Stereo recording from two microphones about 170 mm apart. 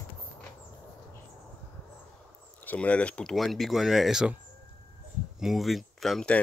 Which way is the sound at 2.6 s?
10° left (ahead or behind).